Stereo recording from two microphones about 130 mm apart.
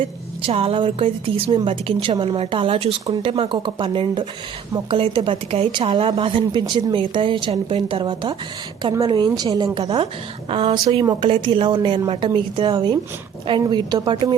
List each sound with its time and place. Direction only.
0.4 s a woman's voice: 45° right (ahead or behind); by 9.6 s 30° right (ahead or behind)
10.5 s a woman's voice: 45° right (ahead or behind)
11.0 s a woman's voice: 35° right (ahead or behind)